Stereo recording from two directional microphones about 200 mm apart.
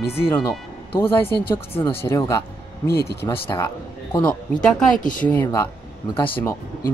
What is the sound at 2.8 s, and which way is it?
Speech, 50° left (ahead or behind).